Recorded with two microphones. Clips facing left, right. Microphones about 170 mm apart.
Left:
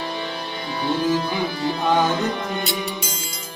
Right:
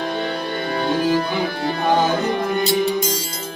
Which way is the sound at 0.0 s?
55° right (ahead or behind).